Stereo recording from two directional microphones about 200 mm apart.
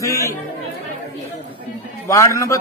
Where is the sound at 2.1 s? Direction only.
15° left (ahead or behind).